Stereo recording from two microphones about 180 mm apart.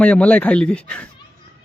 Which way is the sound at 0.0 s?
5° left (ahead or behind).